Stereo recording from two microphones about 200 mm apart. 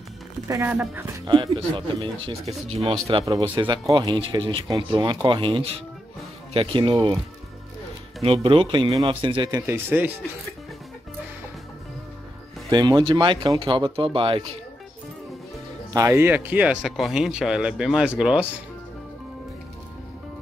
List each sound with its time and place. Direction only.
0.5 s speech: 15° right (ahead or behind)
1.2 s speech: 25° right (ahead or behind)
8.2 s speech: 25° right (ahead or behind)
9.7 s speech: 10° right (ahead or behind)
12.6 s speech: 15° right (ahead or behind)
15.9 s speech: 15° right (ahead or behind)